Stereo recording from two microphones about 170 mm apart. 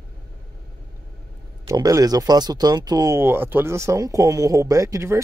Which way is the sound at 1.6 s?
20° right (ahead or behind).